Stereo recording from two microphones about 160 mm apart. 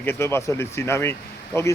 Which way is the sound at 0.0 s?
15° left (ahead or behind).